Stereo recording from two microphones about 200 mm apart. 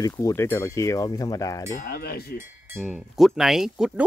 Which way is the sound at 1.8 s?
45° left (ahead or behind).